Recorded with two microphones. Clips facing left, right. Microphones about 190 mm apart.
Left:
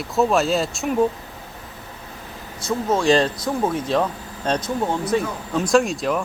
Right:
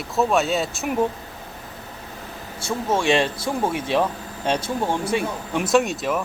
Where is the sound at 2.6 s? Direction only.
30° right (ahead or behind).